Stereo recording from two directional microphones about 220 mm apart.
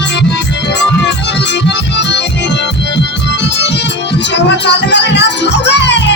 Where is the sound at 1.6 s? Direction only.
50° left (ahead or behind).